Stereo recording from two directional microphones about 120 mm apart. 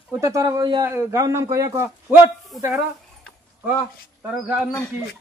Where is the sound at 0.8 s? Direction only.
25° right (ahead or behind).